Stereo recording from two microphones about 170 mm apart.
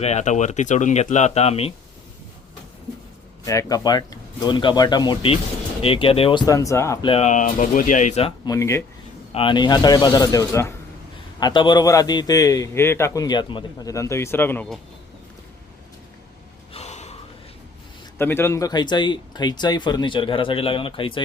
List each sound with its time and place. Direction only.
0.0 s speech: 40° left (ahead or behind)
3.4 s a man's voice: 20° left (ahead or behind)
7.0 s speech: 35° left (ahead or behind)
8.4 s speech: 15° left (ahead or behind)
9.3 s a man's voice: 30° left (ahead or behind); by 14.7 s 10° left (ahead or behind)
16.7 s gasp: 40° left (ahead or behind)
18.2 s a man's voice: 15° left (ahead or behind); by 21.2 s 30° left (ahead or behind)